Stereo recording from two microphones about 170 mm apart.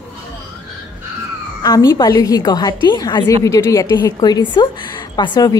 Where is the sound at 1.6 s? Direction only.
20° left (ahead or behind).